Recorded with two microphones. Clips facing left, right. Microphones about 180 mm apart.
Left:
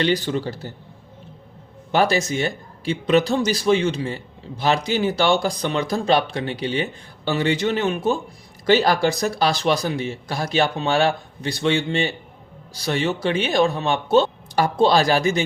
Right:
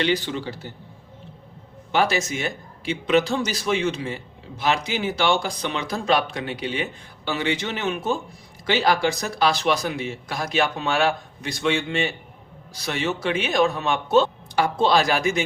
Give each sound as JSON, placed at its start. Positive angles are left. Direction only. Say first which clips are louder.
{"t": 0.0, "sound": "a man's voice", "louder": "left 3 dB", "side_deg": 40}
{"t": 1.9, "sound": "a man's voice", "louder": "left 3 dB", "side_deg": 40}